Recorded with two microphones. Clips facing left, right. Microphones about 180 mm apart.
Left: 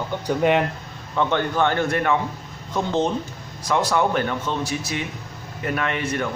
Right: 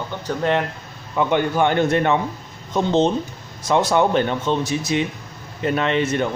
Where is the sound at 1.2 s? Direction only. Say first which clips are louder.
Right 3 dB; 15° right (ahead or behind).